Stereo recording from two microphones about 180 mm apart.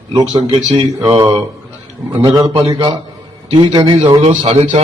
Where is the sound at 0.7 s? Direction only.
20° right (ahead or behind).